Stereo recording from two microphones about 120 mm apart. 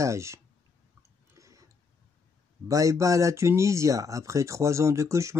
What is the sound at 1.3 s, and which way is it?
Tick-tock, 25° right (ahead or behind).